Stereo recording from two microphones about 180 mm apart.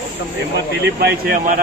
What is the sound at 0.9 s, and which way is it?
Speech, 60° right (ahead or behind).